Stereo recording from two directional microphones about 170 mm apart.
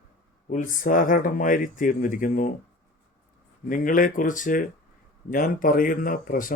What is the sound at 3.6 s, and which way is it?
Speech, 55° left (ahead or behind).